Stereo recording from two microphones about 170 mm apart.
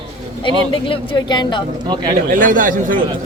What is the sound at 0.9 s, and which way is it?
Speech, 25° left (ahead or behind).